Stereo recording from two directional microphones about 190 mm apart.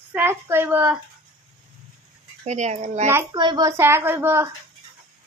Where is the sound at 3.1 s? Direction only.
15° right (ahead or behind).